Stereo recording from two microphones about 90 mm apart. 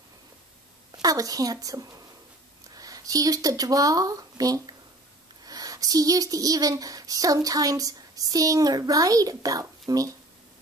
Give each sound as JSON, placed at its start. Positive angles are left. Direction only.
{"t": 1.0, "sound": "speech", "side_deg": -40}